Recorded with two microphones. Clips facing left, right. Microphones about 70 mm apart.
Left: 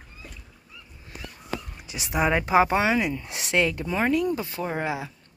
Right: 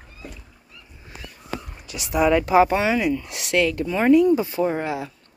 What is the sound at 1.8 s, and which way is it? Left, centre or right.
Speech, left.